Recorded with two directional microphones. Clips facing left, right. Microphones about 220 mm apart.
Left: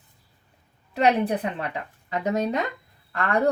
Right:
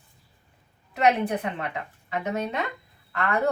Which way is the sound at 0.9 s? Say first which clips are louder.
Left 1 dB; 30° left (ahead or behind).